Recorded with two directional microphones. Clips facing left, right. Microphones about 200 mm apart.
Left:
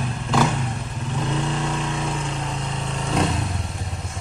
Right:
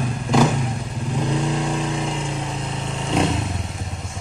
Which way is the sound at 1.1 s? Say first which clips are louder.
Right 3 dB; 15° right (ahead or behind).